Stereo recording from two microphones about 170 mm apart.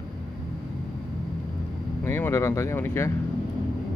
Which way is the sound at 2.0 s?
15° left (ahead or behind).